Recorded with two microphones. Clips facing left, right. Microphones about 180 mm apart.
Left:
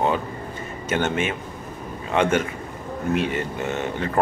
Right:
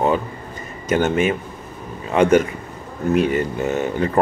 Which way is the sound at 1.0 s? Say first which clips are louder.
Right 6 dB; centre (ahead or behind).